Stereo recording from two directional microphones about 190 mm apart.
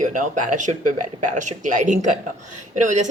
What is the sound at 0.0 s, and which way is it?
Speech, 40° right (ahead or behind).